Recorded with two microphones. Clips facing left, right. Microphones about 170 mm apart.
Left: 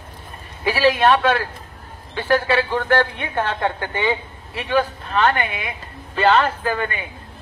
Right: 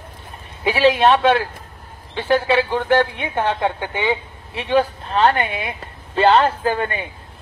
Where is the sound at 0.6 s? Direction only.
20° right (ahead or behind).